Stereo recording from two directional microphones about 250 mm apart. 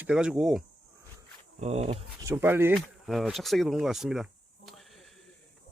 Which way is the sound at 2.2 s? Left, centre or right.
Centre.